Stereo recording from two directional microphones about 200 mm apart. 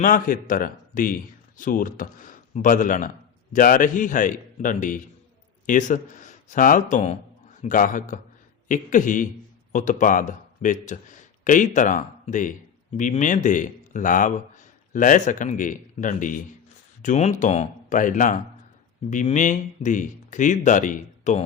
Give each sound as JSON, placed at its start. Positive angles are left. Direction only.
{"t": 0.0, "sound": "a man's voice", "side_deg": 40}